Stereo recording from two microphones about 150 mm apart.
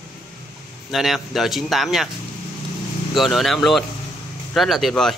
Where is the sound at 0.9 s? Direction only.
Centre (ahead or behind).